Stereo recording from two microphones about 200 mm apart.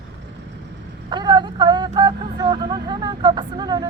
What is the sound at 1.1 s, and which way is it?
Speech, 20° right (ahead or behind).